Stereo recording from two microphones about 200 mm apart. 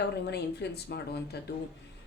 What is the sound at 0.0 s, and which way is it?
Speech, 55° left (ahead or behind).